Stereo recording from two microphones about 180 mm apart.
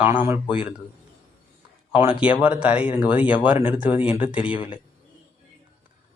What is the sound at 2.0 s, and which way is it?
Speech, 5° right (ahead or behind).